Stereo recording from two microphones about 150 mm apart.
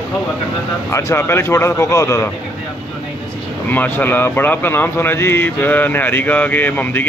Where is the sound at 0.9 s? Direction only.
20° left (ahead or behind).